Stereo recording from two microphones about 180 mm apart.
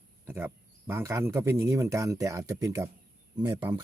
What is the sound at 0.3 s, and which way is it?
Speech, 15° right (ahead or behind).